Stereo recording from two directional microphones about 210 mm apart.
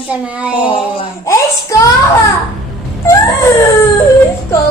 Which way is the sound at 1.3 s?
15° left (ahead or behind).